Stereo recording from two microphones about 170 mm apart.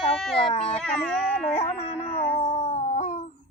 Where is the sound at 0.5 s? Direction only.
35° left (ahead or behind).